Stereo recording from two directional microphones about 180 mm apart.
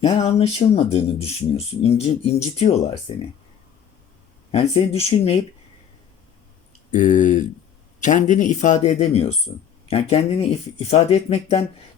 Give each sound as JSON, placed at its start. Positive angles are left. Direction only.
{"t": 0.2, "sound": "speech", "side_deg": 35}
{"t": 4.5, "sound": "speech", "side_deg": 35}
{"t": 6.9, "sound": "speech", "side_deg": 45}